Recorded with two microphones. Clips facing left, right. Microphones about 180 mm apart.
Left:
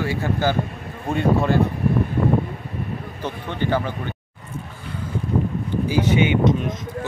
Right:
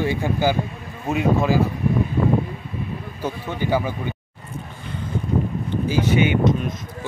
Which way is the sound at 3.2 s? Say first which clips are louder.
Right 1 dB; 10° right (ahead or behind).